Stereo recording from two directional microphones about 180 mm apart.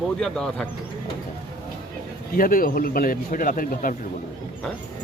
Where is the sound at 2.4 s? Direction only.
50° left (ahead or behind).